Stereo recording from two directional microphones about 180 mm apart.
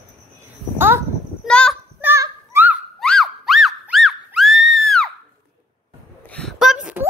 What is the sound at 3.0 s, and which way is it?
Music, 5° left (ahead or behind).